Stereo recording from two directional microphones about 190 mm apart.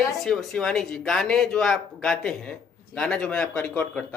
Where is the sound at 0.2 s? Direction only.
Centre (ahead or behind).